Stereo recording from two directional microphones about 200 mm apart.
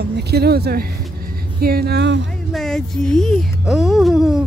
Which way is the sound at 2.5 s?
Centre (ahead or behind).